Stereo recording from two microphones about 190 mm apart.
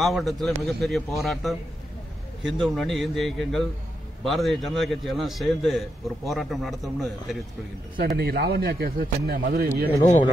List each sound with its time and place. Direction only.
0.0 s a man's voice: centre (ahead or behind)
8.2 s speech: 55° right (ahead or behind)